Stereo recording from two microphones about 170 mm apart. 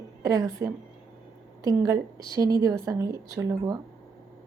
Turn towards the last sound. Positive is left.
turn(degrees=-20)  # may be behind; listen again after turning